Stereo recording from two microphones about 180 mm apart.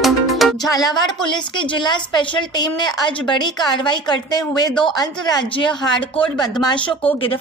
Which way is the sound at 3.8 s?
25° left (ahead or behind).